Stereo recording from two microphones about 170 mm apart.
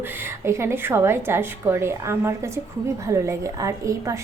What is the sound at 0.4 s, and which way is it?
A woman's voice, 15° right (ahead or behind).